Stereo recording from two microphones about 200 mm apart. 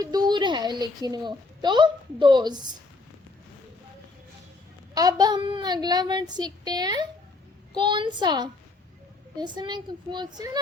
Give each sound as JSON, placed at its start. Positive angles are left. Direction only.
{"t": 0.0, "sound": "a woman's voice", "side_deg": -20}
{"t": 4.9, "sound": "speech", "side_deg": -20}